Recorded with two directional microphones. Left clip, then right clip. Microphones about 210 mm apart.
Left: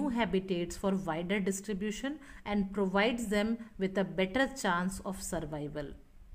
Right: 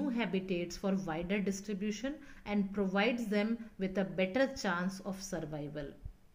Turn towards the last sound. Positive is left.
turn(degrees=45)  # may be behind; listen again after turning